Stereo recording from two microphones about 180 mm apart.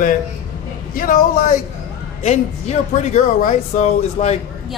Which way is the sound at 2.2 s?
40° left (ahead or behind).